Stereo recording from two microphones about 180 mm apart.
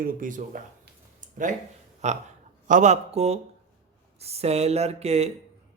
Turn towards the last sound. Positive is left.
turn(degrees=-35)  # may be behind; listen again after turning